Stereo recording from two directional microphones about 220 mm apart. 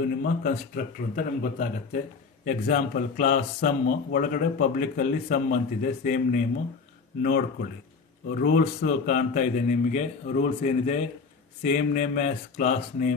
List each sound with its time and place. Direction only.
0.2 s speech: 40° left (ahead or behind)